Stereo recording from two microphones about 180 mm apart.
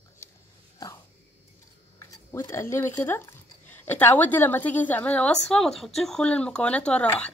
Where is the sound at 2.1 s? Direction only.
15° left (ahead or behind).